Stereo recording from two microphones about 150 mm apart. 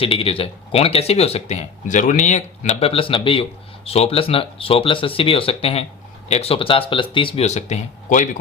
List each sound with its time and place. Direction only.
0.0 s speech: 40° left (ahead or behind); by 8.4 s 60° left (ahead or behind)